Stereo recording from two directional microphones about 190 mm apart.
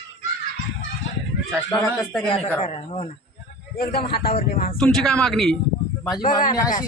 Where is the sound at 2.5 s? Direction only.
35° left (ahead or behind).